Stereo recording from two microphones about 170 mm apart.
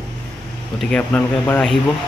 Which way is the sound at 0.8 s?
10° left (ahead or behind).